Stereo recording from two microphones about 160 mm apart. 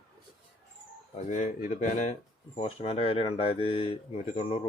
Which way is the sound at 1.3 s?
50° left (ahead or behind).